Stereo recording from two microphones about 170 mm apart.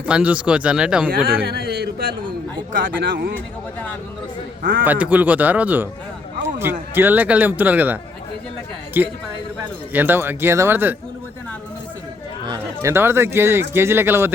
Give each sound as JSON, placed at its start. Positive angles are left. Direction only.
{"t": 0.0, "sound": "speech", "side_deg": -10}
{"t": 1.1, "sound": "a man's voice", "side_deg": -60}
{"t": 3.1, "sound": "speech", "side_deg": -75}
{"t": 4.8, "sound": "speech", "side_deg": -10}
{"t": 8.9, "sound": "speech", "side_deg": -10}
{"t": 12.5, "sound": "speech", "side_deg": -15}